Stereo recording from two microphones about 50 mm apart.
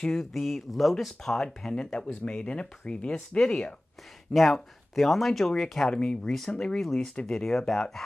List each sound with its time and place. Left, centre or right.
0.0 s speech: centre
0.3 s speech: centre
4.3 s speech: centre
5.9 s speech: centre